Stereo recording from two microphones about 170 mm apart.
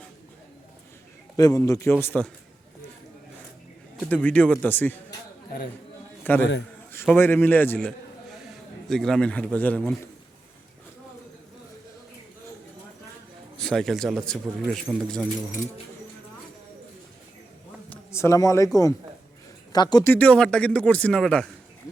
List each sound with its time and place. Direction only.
1.4 s speech: 20° left (ahead or behind)
4.0 s speech: 10° left (ahead or behind)
6.2 s a man's voice: 10° left (ahead or behind)
13.6 s a man's voice: 5° left (ahead or behind)
17.8 s a man's voice: 10° left (ahead or behind)
20.1 s speech: 5° left (ahead or behind)